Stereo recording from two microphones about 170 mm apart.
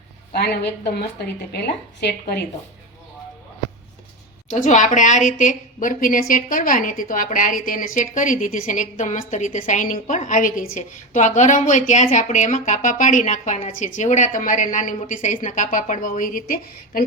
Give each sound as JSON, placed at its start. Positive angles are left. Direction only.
{"t": 0.3, "sound": "a woman's voice", "side_deg": 65}
{"t": 4.4, "sound": "a woman's voice", "side_deg": 45}